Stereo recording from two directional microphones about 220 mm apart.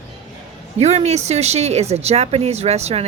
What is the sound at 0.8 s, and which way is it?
A woman's voice, 30° right (ahead or behind).